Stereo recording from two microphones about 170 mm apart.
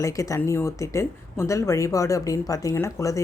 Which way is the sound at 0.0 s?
20° left (ahead or behind).